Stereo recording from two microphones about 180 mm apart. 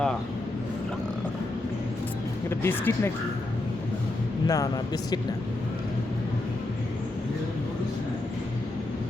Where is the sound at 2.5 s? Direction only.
10° left (ahead or behind).